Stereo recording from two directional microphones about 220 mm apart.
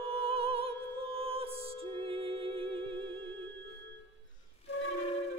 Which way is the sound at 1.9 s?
25° right (ahead or behind).